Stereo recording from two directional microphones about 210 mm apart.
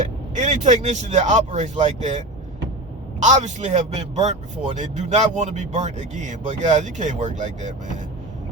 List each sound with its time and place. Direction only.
0.3 s a man's voice: 35° right (ahead or behind)